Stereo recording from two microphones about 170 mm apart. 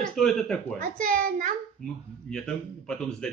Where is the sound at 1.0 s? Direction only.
55° right (ahead or behind).